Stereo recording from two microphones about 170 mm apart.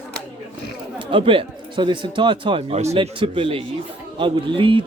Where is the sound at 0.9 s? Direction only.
30° right (ahead or behind).